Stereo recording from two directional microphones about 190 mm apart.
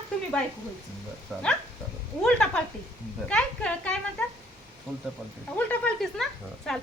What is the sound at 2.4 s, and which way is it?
A woman's voice, 5° left (ahead or behind).